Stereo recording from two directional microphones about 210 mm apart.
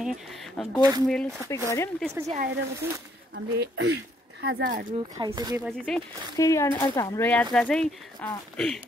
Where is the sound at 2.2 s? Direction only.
35° right (ahead or behind).